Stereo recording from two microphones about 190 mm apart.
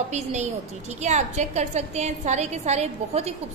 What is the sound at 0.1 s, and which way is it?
A woman's voice, 35° right (ahead or behind).